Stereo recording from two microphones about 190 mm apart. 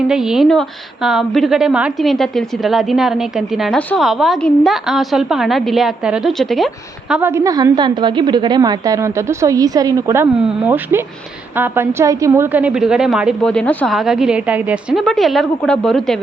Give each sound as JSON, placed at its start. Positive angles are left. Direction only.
{"t": 0.1, "sound": "a woman's voice", "side_deg": -5}
{"t": 7.1, "sound": "a woman's voice", "side_deg": -10}